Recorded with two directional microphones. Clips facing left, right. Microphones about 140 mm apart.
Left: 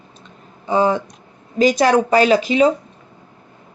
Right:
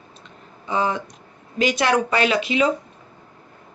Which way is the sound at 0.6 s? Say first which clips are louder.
Left 6 dB; 35° left (ahead or behind).